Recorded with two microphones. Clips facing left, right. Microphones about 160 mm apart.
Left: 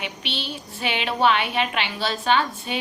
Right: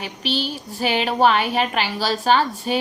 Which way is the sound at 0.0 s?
40° right (ahead or behind).